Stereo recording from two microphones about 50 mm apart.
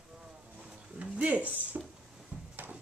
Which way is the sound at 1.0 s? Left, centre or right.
Right.